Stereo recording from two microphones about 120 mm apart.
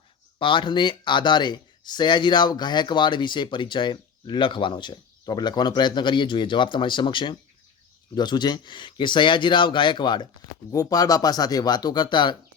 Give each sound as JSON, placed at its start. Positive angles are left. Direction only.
{"t": 0.3, "sound": "speech", "side_deg": 45}
{"t": 10.7, "sound": "speech", "side_deg": 30}